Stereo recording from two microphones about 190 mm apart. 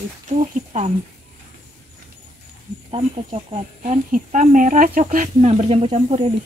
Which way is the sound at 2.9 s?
30° right (ahead or behind).